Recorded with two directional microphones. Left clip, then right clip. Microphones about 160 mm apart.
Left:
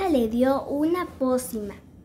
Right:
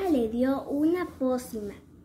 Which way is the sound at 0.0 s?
35° left (ahead or behind).